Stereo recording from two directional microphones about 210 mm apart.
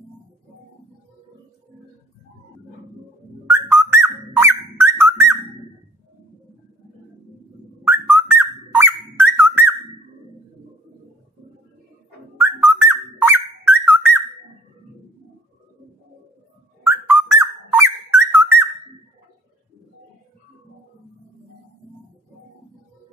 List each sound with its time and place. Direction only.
3.7 s whistle: 10° right (ahead or behind)
7.8 s bird: 10° right (ahead or behind)
12.6 s whistle: 10° right (ahead or behind)
16.8 s whistle: 10° right (ahead or behind)